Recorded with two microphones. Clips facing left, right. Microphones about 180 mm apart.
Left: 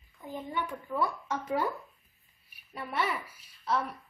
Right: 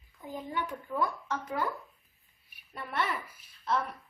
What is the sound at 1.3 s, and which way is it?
Speech, 25° left (ahead or behind).